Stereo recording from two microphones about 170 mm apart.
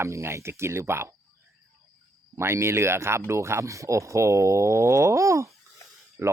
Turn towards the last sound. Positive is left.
turn(degrees=-15)  # may be behind; listen again after turning